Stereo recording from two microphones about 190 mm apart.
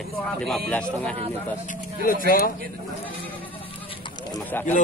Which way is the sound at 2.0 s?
50° left (ahead or behind).